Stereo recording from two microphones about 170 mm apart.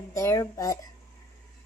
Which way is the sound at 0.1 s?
15° left (ahead or behind).